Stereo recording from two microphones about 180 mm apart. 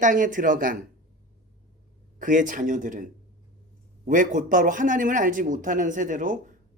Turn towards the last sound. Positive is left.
turn(degrees=-45)  # may be behind; listen again after turning